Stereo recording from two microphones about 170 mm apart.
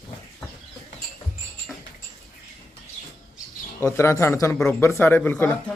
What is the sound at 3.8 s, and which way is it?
Speech, 15° left (ahead or behind).